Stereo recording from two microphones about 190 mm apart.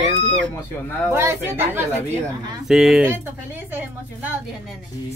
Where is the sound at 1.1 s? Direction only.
15° right (ahead or behind).